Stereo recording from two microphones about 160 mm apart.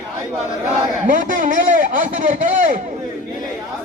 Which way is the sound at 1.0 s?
55° right (ahead or behind).